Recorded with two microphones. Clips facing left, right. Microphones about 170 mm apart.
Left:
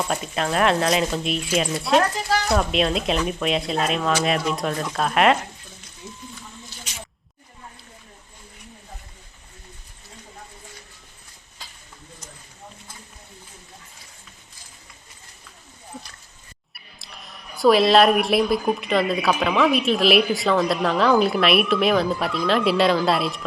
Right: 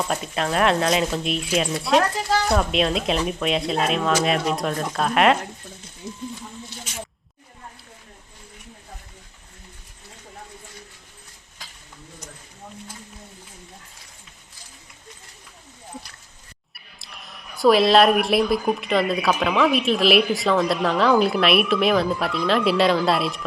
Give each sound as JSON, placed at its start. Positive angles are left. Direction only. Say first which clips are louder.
{"t": 0.0, "sound": "speech", "louder": "even", "side_deg": 0}
{"t": 6.0, "sound": "a sound", "louder": "right 5 dB", "side_deg": -35}
{"t": 17.0, "sound": "speech", "louder": "even", "side_deg": 0}